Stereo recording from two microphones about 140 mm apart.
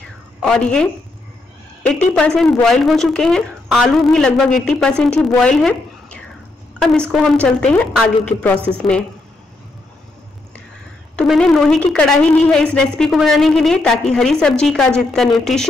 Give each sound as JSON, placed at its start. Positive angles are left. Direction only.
{"t": 0.4, "sound": "a woman's voice", "side_deg": 5}
{"t": 2.1, "sound": "a woman's voice", "side_deg": 5}
{"t": 11.1, "sound": "a woman's voice", "side_deg": 5}